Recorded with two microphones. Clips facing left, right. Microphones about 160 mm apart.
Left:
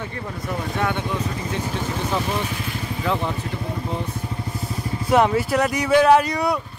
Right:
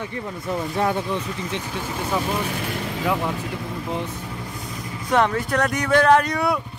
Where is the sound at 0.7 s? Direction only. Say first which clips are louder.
Right 2 dB; 35° right (ahead or behind).